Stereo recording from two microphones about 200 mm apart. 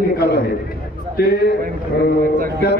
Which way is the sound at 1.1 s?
50° left (ahead or behind).